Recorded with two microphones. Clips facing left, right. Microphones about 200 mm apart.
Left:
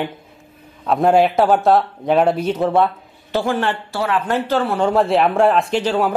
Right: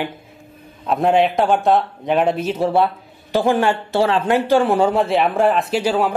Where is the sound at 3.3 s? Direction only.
15° right (ahead or behind).